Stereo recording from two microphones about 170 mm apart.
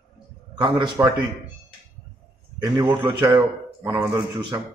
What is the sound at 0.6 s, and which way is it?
Speech, 25° right (ahead or behind).